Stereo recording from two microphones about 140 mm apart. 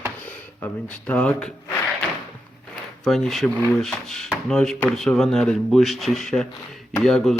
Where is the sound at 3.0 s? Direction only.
Centre (ahead or behind).